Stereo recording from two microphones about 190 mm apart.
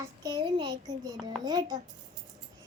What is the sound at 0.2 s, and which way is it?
A child's voice, 20° right (ahead or behind).